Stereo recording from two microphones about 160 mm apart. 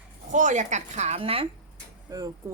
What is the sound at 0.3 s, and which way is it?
A woman's voice, 50° right (ahead or behind).